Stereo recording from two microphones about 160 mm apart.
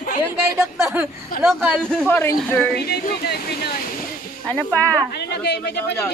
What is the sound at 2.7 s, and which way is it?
Speech, 85° left.